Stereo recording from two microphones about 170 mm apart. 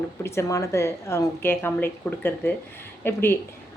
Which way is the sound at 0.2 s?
15° left (ahead or behind).